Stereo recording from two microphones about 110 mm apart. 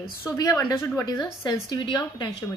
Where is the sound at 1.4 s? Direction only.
35° left (ahead or behind).